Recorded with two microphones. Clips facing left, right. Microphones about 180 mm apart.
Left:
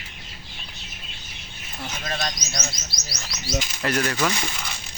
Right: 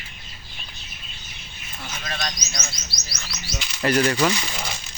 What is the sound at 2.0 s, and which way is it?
Speech, 35° left (ahead or behind).